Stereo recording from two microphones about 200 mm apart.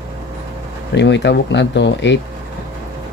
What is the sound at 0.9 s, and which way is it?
Speech, 60° left (ahead or behind).